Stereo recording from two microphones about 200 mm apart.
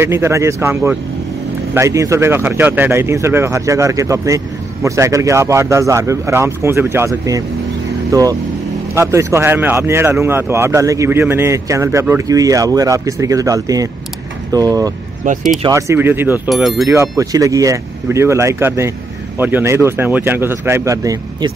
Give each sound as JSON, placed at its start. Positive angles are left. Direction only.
{"t": 0.0, "sound": "speech", "side_deg": -10}
{"t": 15.2, "sound": "speech", "side_deg": -35}
{"t": 15.6, "sound": "speech", "side_deg": -15}
{"t": 16.8, "sound": "speech", "side_deg": -15}